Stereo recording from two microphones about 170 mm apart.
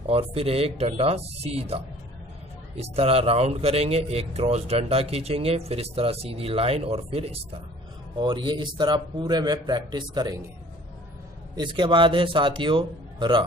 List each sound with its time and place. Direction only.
0.0 s speech: 35° right (ahead or behind)
2.8 s a man's voice: 35° right (ahead or behind)
11.5 s a man's voice: 25° right (ahead or behind)